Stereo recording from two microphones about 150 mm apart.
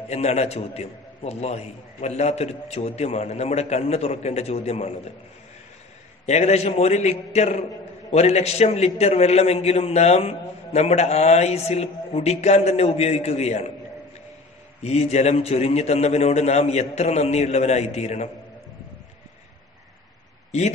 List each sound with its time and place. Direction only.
0.1 s a man's voice: 45° left (ahead or behind)
6.2 s a man's voice: 45° left (ahead or behind)
14.8 s a man's voice: 45° left (ahead or behind)